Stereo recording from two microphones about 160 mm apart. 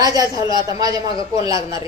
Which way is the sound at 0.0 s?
25° right (ahead or behind).